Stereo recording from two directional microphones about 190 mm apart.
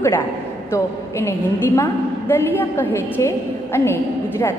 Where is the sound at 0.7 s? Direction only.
15° left (ahead or behind).